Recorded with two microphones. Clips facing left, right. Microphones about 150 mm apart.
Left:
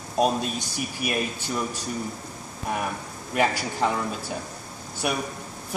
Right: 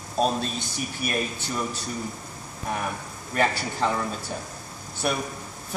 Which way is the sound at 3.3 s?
10° left (ahead or behind).